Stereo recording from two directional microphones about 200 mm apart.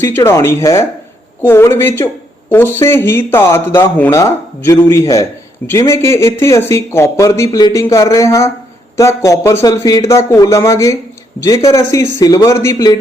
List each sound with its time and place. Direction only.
0.0 s speech: 10° left (ahead or behind)